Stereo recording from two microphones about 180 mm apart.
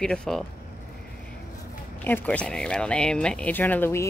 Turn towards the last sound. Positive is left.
turn(degrees=10)  # may be behind; listen again after turning